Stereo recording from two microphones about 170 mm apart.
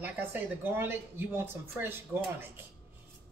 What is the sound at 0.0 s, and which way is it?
Speech, 10° right (ahead or behind).